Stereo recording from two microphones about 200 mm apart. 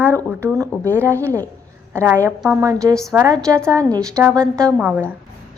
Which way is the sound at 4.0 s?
5° left (ahead or behind).